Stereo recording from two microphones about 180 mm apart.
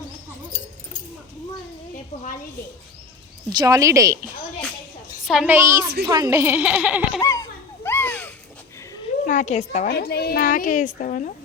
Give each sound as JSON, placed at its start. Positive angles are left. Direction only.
{"t": 3.6, "sound": "speech", "side_deg": -20}
{"t": 5.2, "sound": "a woman's voice", "side_deg": 0}
{"t": 5.5, "sound": "speech", "side_deg": -15}
{"t": 7.2, "sound": "speech", "side_deg": 15}
{"t": 7.9, "sound": "a sound", "side_deg": 10}
{"t": 9.2, "sound": "a woman's voice", "side_deg": 45}
{"t": 9.9, "sound": "a woman's voice", "side_deg": 60}